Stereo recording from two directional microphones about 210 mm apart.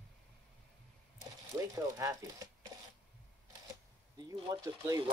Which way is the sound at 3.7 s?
20° right (ahead or behind).